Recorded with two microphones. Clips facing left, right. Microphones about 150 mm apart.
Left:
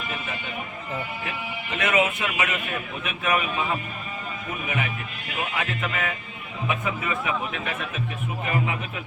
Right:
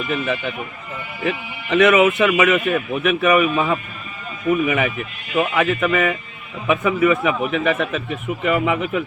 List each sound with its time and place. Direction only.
1.2 s speech: 90° right; by 3.8 s 70° right (ahead or behind)
4.6 s speech: 90° right
5.4 s a man's voice: 70° right (ahead or behind)